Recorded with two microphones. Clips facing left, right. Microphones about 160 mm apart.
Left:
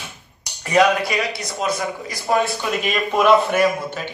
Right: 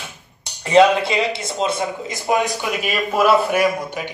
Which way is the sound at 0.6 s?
25° right (ahead or behind).